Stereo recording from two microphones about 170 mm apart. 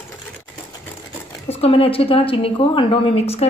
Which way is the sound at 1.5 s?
35° left (ahead or behind).